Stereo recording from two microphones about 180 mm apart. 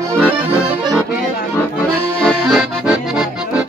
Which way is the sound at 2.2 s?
5° left (ahead or behind).